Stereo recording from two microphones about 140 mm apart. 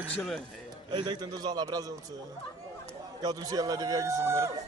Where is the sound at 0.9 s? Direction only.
30° right (ahead or behind).